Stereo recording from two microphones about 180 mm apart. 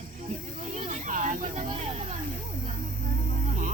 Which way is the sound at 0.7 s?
40° right (ahead or behind).